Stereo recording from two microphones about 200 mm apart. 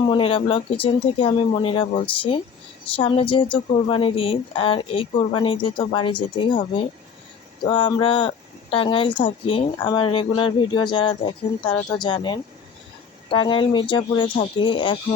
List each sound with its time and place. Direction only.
0.1 s a woman's voice: 25° left (ahead or behind)